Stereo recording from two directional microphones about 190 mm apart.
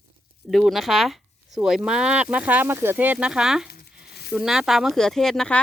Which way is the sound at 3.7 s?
55° left (ahead or behind).